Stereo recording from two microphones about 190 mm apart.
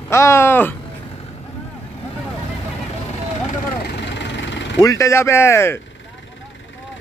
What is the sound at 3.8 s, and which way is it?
Vehicle, 65° left (ahead or behind).